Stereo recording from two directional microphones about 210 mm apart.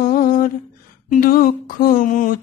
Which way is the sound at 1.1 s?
45° left (ahead or behind).